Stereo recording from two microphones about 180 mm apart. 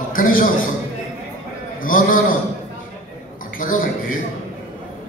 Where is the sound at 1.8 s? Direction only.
50° left (ahead or behind).